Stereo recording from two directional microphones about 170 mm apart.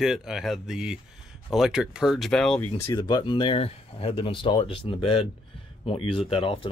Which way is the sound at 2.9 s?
25° left (ahead or behind).